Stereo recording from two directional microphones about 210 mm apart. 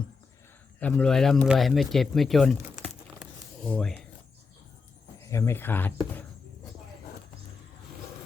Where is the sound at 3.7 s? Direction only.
5° left (ahead or behind).